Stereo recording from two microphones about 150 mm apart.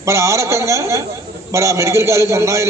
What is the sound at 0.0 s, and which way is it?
A man's voice, 20° right (ahead or behind).